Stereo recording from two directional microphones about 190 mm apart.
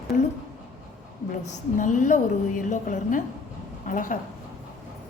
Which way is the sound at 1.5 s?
40° left (ahead or behind).